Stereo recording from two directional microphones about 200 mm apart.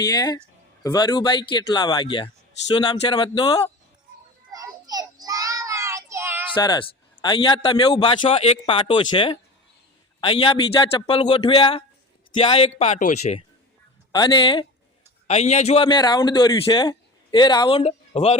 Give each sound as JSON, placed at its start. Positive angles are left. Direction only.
{"t": 0.0, "sound": "a man's voice", "side_deg": 20}
{"t": 4.5, "sound": "child singing", "side_deg": -20}
{"t": 6.5, "sound": "a man's voice", "side_deg": 25}
{"t": 14.1, "sound": "a man's voice", "side_deg": 20}
{"t": 15.3, "sound": "a man's voice", "side_deg": 35}